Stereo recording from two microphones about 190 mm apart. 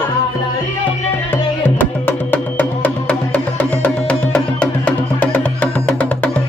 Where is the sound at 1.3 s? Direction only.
10° left (ahead or behind).